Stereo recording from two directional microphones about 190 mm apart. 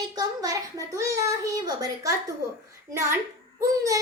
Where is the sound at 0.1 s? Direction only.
20° right (ahead or behind).